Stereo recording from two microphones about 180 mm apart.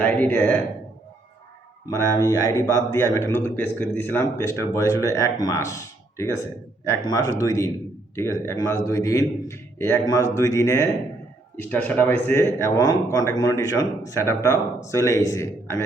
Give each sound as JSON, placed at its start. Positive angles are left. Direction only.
{"t": 0.0, "sound": "a man's voice", "side_deg": 10}
{"t": 1.9, "sound": "a man's voice", "side_deg": 20}